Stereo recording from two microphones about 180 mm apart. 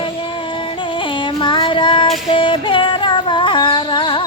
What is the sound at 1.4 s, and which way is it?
Music, 25° left (ahead or behind).